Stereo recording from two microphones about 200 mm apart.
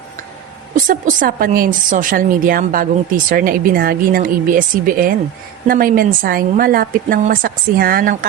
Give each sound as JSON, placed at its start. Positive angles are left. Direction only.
{"t": 0.9, "sound": "speech", "side_deg": -40}